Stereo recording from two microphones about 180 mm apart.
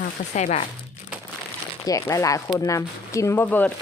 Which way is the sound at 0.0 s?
45° left (ahead or behind).